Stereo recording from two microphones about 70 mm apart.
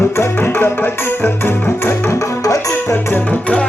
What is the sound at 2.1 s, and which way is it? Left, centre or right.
Music, left.